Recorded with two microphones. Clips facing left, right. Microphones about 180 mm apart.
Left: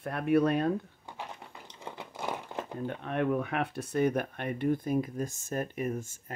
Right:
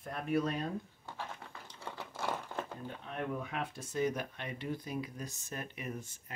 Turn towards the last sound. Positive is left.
turn(degrees=45)  # may be behind; listen again after turning